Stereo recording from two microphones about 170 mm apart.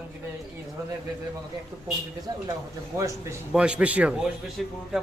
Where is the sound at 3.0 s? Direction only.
15° right (ahead or behind).